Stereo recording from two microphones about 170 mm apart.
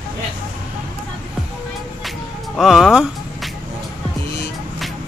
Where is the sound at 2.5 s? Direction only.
Centre (ahead or behind).